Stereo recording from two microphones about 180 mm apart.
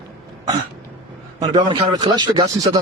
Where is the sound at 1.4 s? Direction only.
20° right (ahead or behind).